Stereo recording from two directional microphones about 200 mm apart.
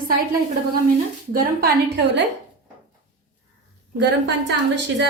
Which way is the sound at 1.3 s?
45° right (ahead or behind).